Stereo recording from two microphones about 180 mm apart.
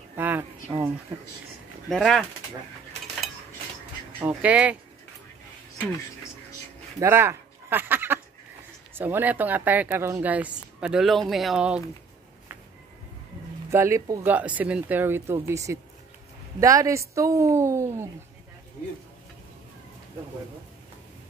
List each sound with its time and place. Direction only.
0.1 s speech: 10° right (ahead or behind)
1.9 s speech: centre (ahead or behind)
4.4 s speech: 5° right (ahead or behind)
7.0 s a sound: 15° right (ahead or behind)
8.9 s speech: 10° right (ahead or behind)
13.7 s speech: 15° right (ahead or behind)